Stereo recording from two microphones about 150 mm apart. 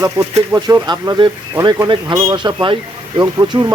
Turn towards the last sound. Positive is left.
turn(degrees=-30)  # may be behind; listen again after turning